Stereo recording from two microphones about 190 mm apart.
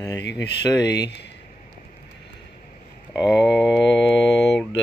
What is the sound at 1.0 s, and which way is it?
Speech, 65° left (ahead or behind).